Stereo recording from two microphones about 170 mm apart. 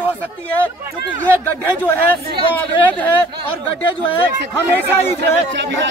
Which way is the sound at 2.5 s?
10° left (ahead or behind).